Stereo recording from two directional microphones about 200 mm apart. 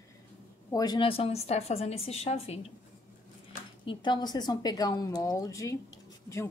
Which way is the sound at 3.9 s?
20° left (ahead or behind).